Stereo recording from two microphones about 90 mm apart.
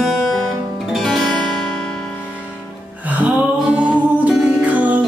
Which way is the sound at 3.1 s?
15° right (ahead or behind).